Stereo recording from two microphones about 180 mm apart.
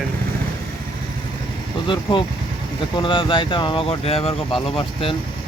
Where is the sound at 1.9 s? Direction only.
30° left (ahead or behind).